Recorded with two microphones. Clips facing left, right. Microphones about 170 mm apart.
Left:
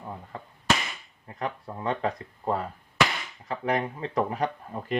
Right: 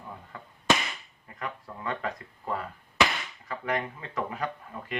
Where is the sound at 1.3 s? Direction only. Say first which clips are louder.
Left 5 dB; 35° left (ahead or behind).